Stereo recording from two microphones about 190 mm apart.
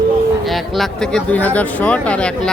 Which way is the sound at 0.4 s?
Centre (ahead or behind).